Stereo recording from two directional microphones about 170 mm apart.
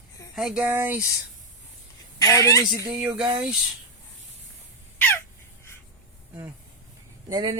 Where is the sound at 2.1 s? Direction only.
20° left (ahead or behind).